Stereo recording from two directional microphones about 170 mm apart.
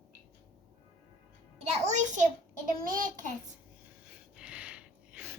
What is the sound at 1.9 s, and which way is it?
A child's voice, 45° right (ahead or behind).